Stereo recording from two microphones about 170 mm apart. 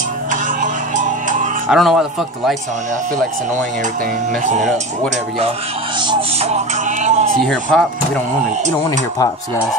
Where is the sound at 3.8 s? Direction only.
50° right (ahead or behind).